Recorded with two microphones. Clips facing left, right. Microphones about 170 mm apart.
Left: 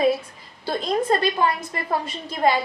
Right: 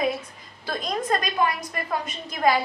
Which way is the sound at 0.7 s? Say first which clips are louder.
Left 4 dB; 30° left (ahead or behind).